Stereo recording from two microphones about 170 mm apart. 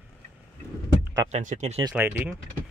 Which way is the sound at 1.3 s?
45° right (ahead or behind).